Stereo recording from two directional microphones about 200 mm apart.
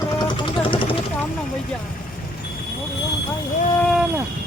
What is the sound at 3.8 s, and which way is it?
Speech, centre (ahead or behind).